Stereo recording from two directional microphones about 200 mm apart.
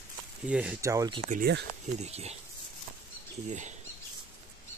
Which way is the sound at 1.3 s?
50° right (ahead or behind).